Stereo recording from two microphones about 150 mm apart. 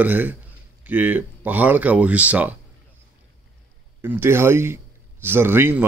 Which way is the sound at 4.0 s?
15° right (ahead or behind).